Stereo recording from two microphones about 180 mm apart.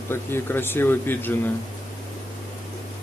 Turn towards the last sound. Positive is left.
turn(degrees=10)  # may be behind; listen again after turning